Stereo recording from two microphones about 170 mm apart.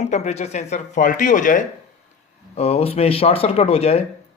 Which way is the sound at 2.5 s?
35° left (ahead or behind).